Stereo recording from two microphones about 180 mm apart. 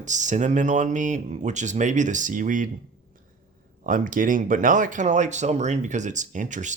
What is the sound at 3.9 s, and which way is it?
Speech, 50° right (ahead or behind).